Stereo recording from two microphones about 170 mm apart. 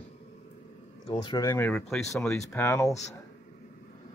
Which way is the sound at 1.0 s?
25° left (ahead or behind).